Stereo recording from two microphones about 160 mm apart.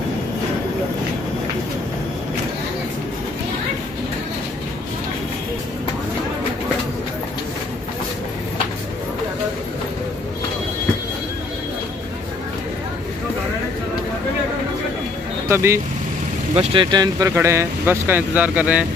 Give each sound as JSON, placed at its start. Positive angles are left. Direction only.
{"t": 15.4, "sound": "speech", "side_deg": -15}
{"t": 16.5, "sound": "speech", "side_deg": -30}